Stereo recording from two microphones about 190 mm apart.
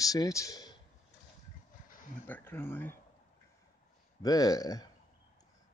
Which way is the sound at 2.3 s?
10° left (ahead or behind).